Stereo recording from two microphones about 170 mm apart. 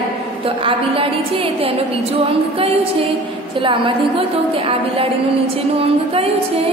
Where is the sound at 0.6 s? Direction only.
30° right (ahead or behind).